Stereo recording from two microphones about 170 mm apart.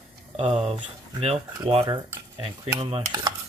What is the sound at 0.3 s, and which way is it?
Cutlery, 40° right (ahead or behind).